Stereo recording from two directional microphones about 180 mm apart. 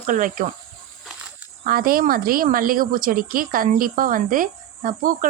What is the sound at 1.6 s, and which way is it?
Speech, 55° right (ahead or behind).